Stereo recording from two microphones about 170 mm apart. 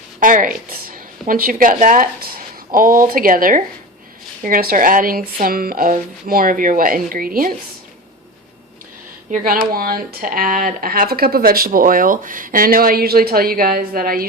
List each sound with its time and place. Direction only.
0.2 s a woman's voice: 50° right (ahead or behind)
9.3 s speech: 55° right (ahead or behind)